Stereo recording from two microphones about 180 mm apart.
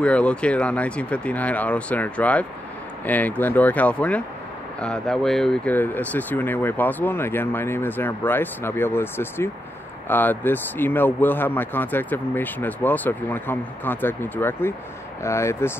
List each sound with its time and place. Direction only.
0.0 s speech: 5° left (ahead or behind)